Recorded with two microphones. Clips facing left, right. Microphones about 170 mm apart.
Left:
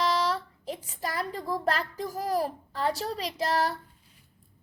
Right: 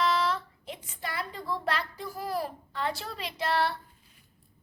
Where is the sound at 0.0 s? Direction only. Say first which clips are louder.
Left 1 dB; 40° left (ahead or behind).